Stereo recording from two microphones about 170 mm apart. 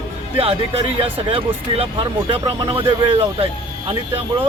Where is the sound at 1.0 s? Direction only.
35° right (ahead or behind).